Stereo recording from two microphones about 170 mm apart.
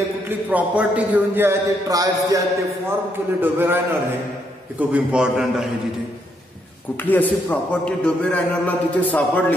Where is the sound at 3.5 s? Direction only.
15° right (ahead or behind).